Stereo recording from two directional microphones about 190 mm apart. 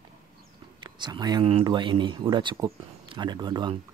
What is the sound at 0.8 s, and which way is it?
Speech, 25° right (ahead or behind).